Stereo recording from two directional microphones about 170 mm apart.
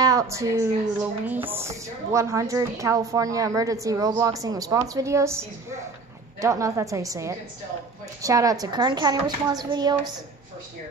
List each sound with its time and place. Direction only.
0.0 s a woman's voice: 20° right (ahead or behind)